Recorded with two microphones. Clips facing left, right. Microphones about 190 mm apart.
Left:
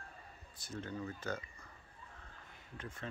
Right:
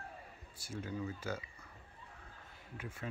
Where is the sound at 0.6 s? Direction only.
10° right (ahead or behind).